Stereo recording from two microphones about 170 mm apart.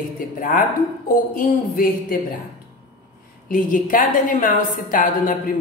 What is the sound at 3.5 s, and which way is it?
A woman's voice, 50° left (ahead or behind).